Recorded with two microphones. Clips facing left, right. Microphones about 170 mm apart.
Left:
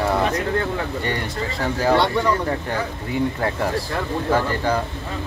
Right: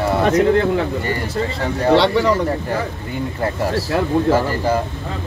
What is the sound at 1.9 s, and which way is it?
Speech, 90° right.